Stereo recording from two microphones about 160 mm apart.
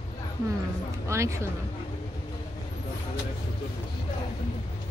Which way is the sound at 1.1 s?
15° right (ahead or behind).